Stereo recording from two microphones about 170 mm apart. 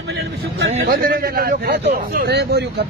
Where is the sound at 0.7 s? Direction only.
40° right (ahead or behind).